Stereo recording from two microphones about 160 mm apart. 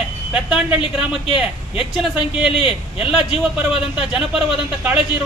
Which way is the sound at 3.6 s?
5° right (ahead or behind).